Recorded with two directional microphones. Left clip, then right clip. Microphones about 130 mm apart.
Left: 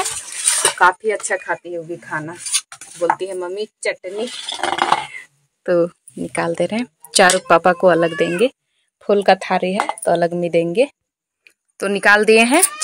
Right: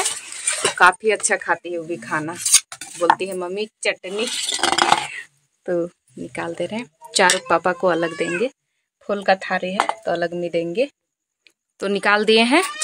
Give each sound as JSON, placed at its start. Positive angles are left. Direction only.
{"t": 0.7, "sound": "speech", "side_deg": -15}
{"t": 4.1, "sound": "a sound", "side_deg": -45}
{"t": 5.6, "sound": "speech", "side_deg": 20}
{"t": 6.1, "sound": "speech", "side_deg": 35}
{"t": 9.0, "sound": "speech", "side_deg": 65}
{"t": 11.7, "sound": "speech", "side_deg": 10}